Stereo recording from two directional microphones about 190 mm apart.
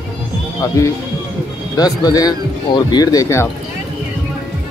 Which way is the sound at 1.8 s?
20° left (ahead or behind).